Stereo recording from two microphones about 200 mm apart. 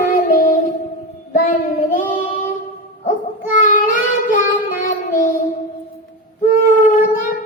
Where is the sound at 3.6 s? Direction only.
40° left (ahead or behind).